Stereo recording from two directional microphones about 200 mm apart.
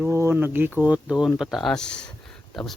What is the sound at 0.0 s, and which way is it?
Speech, 10° right (ahead or behind).